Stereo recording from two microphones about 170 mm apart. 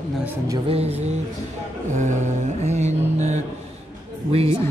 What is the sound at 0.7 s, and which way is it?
Speech, 35° right (ahead or behind).